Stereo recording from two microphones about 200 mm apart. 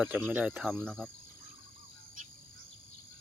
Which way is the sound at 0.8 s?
5° left (ahead or behind).